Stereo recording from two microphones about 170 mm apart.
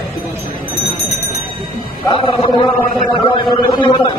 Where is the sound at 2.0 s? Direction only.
30° left (ahead or behind).